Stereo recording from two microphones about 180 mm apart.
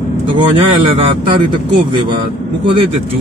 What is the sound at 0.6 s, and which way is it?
Speech, 25° right (ahead or behind).